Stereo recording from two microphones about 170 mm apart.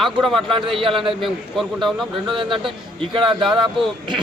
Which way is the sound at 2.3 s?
30° right (ahead or behind).